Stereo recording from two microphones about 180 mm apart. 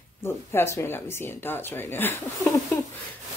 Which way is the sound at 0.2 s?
15° left (ahead or behind).